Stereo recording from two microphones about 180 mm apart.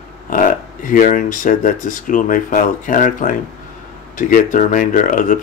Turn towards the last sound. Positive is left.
turn(degrees=45)  # may be behind; listen again after turning